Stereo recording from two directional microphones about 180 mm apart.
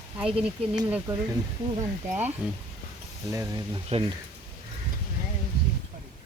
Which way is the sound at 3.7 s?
25° right (ahead or behind).